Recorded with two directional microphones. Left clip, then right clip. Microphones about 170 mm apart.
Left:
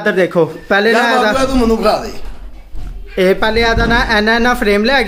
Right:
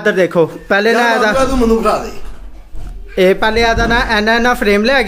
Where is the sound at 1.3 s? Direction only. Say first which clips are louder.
Right 1 dB; 25° left (ahead or behind).